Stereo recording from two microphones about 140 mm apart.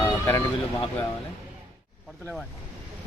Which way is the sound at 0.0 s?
15° left (ahead or behind).